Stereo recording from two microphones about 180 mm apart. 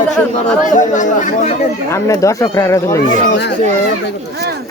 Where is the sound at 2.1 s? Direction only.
20° left (ahead or behind).